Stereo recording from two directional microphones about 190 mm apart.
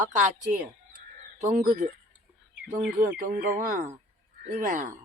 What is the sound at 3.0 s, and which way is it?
Speech, 45° right (ahead or behind).